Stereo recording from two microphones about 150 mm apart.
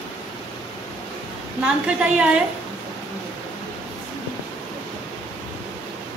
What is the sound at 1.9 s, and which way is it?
Speech, 5° right (ahead or behind).